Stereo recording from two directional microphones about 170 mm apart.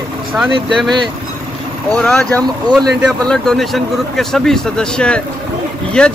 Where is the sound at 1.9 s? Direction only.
5° left (ahead or behind).